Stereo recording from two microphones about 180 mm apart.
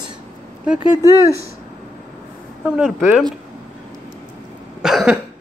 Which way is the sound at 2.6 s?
5° right (ahead or behind).